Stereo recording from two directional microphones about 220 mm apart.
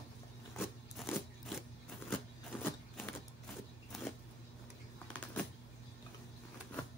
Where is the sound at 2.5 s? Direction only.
5° left (ahead or behind).